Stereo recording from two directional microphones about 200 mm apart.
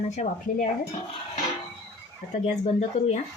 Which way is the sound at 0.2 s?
30° left (ahead or behind).